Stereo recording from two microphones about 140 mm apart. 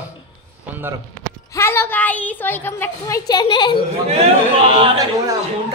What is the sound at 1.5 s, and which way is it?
A woman's voice, 20° left (ahead or behind).